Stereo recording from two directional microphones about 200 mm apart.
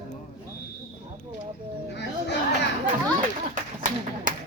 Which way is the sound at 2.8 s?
40° right (ahead or behind).